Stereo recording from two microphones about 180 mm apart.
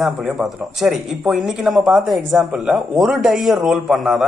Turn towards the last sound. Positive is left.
turn(degrees=0)  # may be behind; listen again after turning